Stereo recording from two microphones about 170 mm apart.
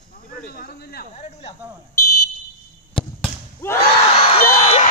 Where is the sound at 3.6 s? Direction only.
15° left (ahead or behind).